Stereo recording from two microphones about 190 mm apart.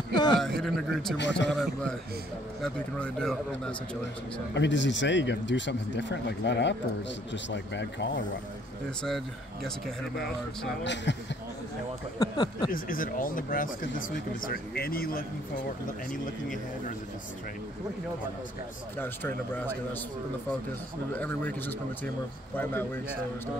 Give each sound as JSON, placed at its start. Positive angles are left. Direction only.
{"t": 0.1, "sound": "a sound", "side_deg": 20}
{"t": 0.4, "sound": "a man's voice", "side_deg": 0}
{"t": 1.1, "sound": "speech", "side_deg": 70}
{"t": 1.5, "sound": "a man's voice", "side_deg": 5}
{"t": 4.6, "sound": "speech", "side_deg": 70}
{"t": 9.0, "sound": "a man's voice", "side_deg": 0}
{"t": 10.8, "sound": "speech", "side_deg": 70}
{"t": 12.2, "sound": "speech", "side_deg": 20}
{"t": 12.7, "sound": "speech", "side_deg": 50}
{"t": 18.9, "sound": "a man's voice", "side_deg": 10}
{"t": 21.1, "sound": "a man's voice", "side_deg": 10}